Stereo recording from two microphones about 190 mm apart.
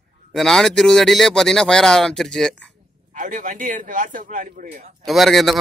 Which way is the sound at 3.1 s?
45° right (ahead or behind).